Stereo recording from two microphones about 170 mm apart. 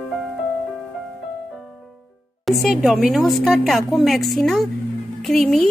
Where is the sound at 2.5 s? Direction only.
Centre (ahead or behind).